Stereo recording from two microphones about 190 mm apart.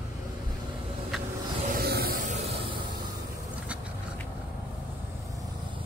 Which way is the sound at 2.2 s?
35° right (ahead or behind).